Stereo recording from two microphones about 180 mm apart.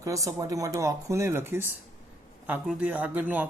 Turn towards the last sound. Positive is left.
turn(degrees=-10)  # may be behind; listen again after turning